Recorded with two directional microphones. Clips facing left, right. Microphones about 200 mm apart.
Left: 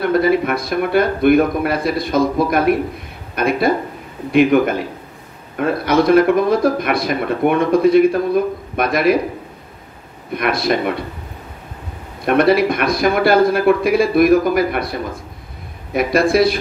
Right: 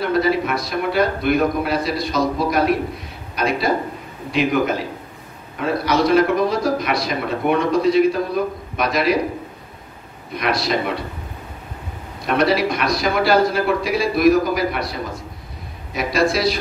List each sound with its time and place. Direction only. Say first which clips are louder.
0.0 s speech: left 4 dB; 55° left (ahead or behind)
10.3 s speech: left 3 dB; 55° left (ahead or behind)
12.3 s a man's voice: left 5 dB; 55° left (ahead or behind)